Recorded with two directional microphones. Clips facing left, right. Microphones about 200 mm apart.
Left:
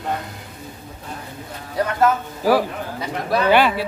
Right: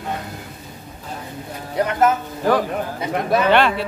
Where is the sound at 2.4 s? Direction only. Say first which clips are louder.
Left 1 dB; 10° left (ahead or behind).